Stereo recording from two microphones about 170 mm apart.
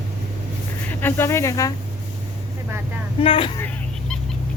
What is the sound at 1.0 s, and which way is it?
Speech, 15° left (ahead or behind).